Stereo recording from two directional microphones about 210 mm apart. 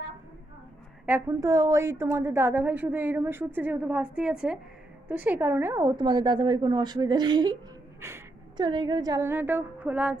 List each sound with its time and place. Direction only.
1.0 s a woman's voice: 10° right (ahead or behind)